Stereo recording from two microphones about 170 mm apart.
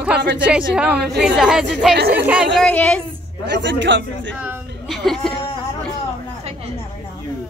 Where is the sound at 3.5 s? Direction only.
90° right.